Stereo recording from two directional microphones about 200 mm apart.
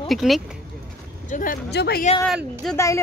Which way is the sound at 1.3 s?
45° left (ahead or behind).